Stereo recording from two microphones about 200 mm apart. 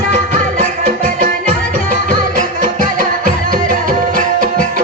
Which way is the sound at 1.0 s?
45° right (ahead or behind).